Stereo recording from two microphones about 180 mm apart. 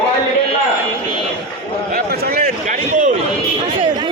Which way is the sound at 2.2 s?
55° right (ahead or behind).